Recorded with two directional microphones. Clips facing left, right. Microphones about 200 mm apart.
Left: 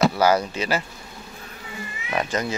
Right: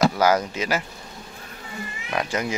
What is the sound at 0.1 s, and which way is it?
Speech, 10° left (ahead or behind).